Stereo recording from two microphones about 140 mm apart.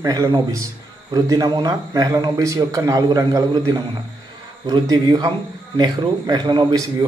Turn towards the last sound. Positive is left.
turn(degrees=-30)  # may be behind; listen again after turning